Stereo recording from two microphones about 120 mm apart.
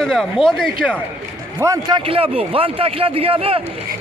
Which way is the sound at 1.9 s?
50° right (ahead or behind).